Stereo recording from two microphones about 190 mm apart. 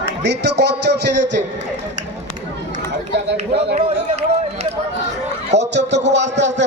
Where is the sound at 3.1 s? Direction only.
65° right (ahead or behind).